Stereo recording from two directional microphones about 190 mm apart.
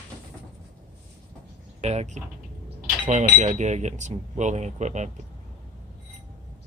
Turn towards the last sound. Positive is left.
turn(degrees=-40)  # may be behind; listen again after turning